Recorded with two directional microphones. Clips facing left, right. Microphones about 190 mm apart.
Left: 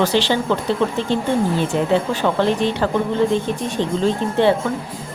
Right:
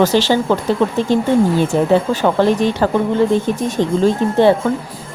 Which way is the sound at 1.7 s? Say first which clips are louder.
Right 4 dB; 40° right (ahead or behind).